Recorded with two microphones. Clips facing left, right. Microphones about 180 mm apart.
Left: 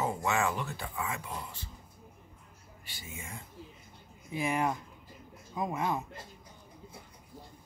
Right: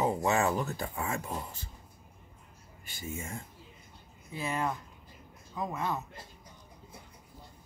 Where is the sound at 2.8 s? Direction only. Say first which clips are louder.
Right 7 dB; 45° right (ahead or behind).